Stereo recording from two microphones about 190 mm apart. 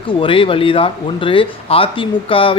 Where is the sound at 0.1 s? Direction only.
25° left (ahead or behind).